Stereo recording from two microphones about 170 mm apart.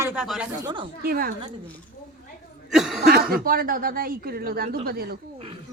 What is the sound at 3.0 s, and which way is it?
Speech, 60° right (ahead or behind).